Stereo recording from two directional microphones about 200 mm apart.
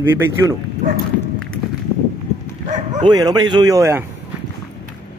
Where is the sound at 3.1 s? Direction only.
20° right (ahead or behind).